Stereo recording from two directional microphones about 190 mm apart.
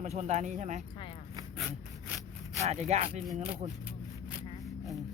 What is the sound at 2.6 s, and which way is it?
Speech, 35° right (ahead or behind).